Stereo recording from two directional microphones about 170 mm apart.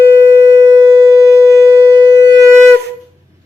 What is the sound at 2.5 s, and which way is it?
Wind instrument, 5° left (ahead or behind).